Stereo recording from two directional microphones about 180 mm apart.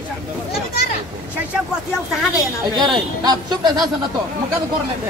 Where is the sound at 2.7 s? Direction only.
20° right (ahead or behind).